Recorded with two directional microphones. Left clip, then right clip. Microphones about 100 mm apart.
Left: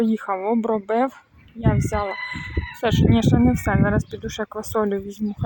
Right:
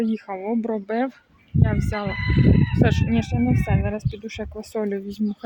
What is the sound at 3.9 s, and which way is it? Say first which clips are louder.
Speech: left 5 dB; 5° left (ahead or behind).